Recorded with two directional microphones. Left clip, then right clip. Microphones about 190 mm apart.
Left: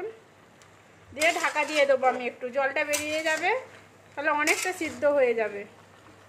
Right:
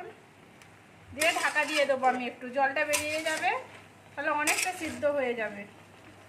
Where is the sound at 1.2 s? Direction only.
40° left (ahead or behind).